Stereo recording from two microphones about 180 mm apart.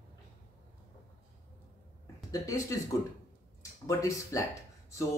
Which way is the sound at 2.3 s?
20° left (ahead or behind).